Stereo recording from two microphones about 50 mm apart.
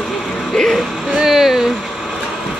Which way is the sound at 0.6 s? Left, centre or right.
Centre.